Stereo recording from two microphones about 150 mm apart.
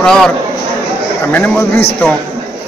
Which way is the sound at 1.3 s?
10° left (ahead or behind).